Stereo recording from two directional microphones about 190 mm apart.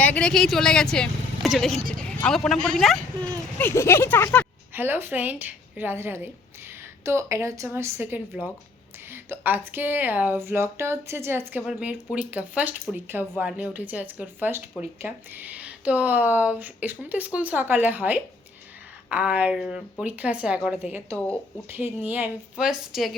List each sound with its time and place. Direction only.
0.0 s a woman's voice: 5° left (ahead or behind)
3.6 s speech: 10° left (ahead or behind)
4.7 s a woman's voice: 10° right (ahead or behind)